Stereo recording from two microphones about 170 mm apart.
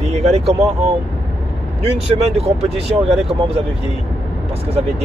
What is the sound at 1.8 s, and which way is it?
Speech, 40° right (ahead or behind).